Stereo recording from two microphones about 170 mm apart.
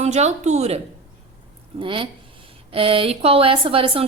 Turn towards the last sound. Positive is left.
turn(degrees=-35)  # may be behind; listen again after turning